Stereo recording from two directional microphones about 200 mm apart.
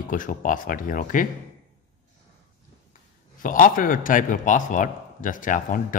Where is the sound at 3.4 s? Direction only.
40° left (ahead or behind).